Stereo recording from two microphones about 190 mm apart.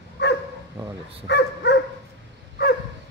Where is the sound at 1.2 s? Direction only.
65° left (ahead or behind).